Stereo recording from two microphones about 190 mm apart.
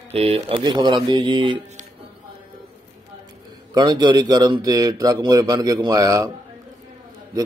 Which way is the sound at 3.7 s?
25° right (ahead or behind).